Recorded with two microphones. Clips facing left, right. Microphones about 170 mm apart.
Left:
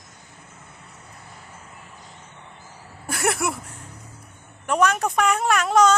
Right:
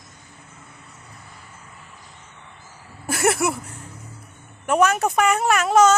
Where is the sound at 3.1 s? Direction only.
Centre (ahead or behind).